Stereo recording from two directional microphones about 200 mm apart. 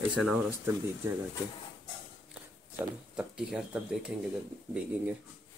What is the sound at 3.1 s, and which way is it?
Speech, 5° right (ahead or behind).